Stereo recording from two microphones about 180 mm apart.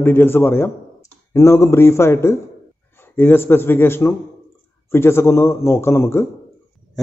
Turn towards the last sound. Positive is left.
turn(degrees=15)  # may be behind; listen again after turning